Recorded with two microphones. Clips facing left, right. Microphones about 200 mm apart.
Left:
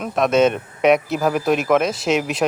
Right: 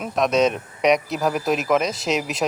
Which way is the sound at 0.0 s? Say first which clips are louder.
Left 3 dB; centre (ahead or behind).